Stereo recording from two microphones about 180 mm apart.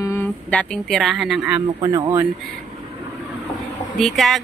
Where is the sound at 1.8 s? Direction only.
20° right (ahead or behind).